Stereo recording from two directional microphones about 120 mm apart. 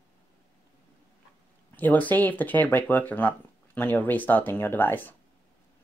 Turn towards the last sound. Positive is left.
turn(degrees=15)  # may be behind; listen again after turning